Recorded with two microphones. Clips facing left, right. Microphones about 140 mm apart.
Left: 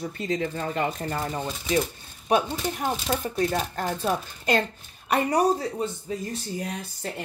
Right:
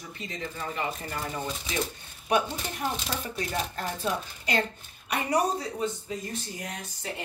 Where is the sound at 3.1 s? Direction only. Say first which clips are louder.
Left 7 dB; 45° left (ahead or behind).